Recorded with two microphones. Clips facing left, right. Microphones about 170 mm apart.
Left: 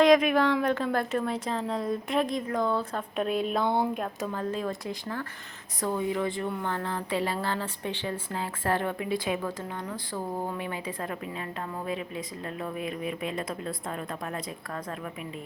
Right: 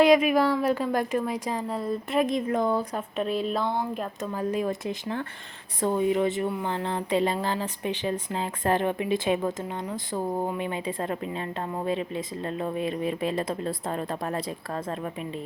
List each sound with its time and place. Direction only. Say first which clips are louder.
0.0 s a woman's voice: right 1 dB; 5° right (ahead or behind)
2.2 s speech: right 3 dB; 20° right (ahead or behind)
3.2 s a woman's voice: even; centre (ahead or behind)
4.4 s speech: right 6 dB; 15° right (ahead or behind)
6.5 s a woman's voice: right 2 dB; 10° right (ahead or behind)
6.7 s a woman's voice: right 4 dB; 20° right (ahead or behind)